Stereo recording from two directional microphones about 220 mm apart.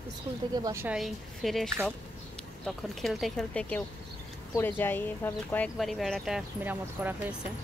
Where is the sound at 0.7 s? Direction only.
10° right (ahead or behind).